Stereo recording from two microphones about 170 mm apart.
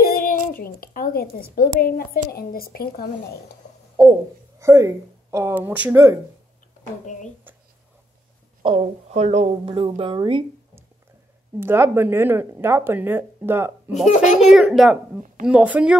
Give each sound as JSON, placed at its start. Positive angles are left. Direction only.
{"t": 0.0, "sound": "speech", "side_deg": 55}
{"t": 4.6, "sound": "speech", "side_deg": -15}
{"t": 8.6, "sound": "speech", "side_deg": -35}
{"t": 11.6, "sound": "speech", "side_deg": -15}
{"t": 14.0, "sound": "a child's voice", "side_deg": 45}
{"t": 14.5, "sound": "a child's voice", "side_deg": 0}